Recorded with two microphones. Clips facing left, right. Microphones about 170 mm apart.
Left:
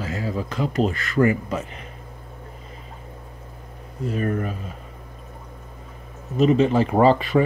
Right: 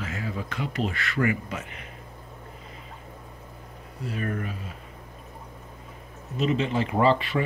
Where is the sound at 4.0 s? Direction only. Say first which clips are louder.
Left 6 dB; 45° left (ahead or behind).